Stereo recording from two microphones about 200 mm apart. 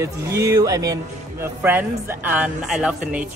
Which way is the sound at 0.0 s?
15° right (ahead or behind).